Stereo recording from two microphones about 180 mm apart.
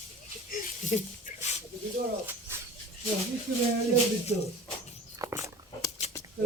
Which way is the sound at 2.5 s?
15° right (ahead or behind).